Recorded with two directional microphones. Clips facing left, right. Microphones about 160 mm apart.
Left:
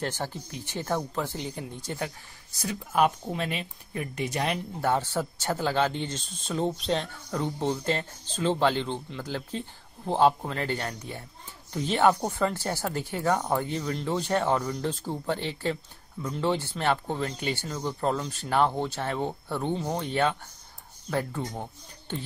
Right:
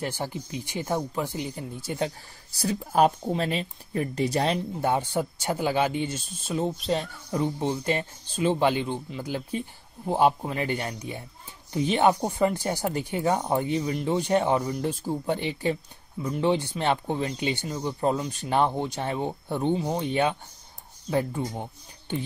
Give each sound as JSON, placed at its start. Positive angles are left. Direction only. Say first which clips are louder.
{"t": 0.0, "sound": "speech", "louder": "right 1 dB", "side_deg": -10}
{"t": 2.0, "sound": "speech", "louder": "right 5 dB", "side_deg": -30}
{"t": 4.8, "sound": "speech", "louder": "right 1 dB", "side_deg": -15}